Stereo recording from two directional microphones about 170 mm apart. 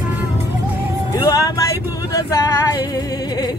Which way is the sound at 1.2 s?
20° left (ahead or behind).